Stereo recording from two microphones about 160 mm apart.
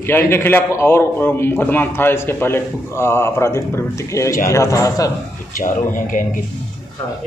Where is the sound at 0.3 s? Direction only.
15° left (ahead or behind).